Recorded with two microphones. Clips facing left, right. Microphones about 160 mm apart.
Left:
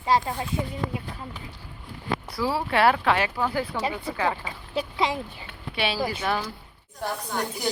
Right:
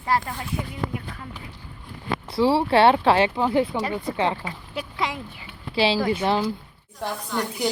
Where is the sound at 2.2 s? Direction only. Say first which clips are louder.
Right 9 dB; 30° right (ahead or behind).